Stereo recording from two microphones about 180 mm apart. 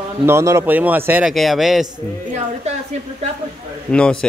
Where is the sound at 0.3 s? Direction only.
15° right (ahead or behind).